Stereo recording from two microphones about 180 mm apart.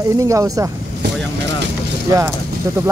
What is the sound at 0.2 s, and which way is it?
Speech, 15° right (ahead or behind).